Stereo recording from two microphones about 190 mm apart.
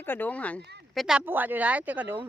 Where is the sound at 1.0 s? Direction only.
5° right (ahead or behind).